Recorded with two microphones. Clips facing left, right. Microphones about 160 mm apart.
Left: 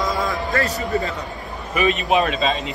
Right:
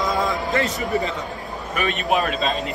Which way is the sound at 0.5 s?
20° right (ahead or behind).